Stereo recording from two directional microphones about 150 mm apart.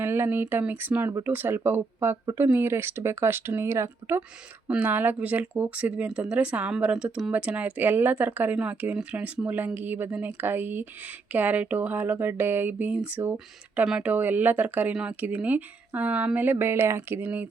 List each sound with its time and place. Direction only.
0.0 s speech: 15° right (ahead or behind)